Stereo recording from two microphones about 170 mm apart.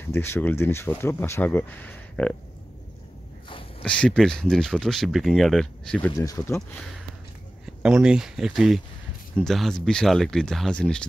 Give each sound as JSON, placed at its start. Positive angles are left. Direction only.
{"t": 0.1, "sound": "speech", "side_deg": 15}
{"t": 3.8, "sound": "speech", "side_deg": 5}
{"t": 6.1, "sound": "speech", "side_deg": 20}
{"t": 7.6, "sound": "speech", "side_deg": -5}